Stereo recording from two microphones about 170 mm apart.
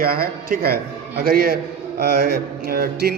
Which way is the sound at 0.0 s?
60° right (ahead or behind).